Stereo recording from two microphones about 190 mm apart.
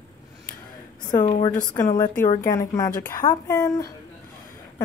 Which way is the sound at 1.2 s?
30° left (ahead or behind).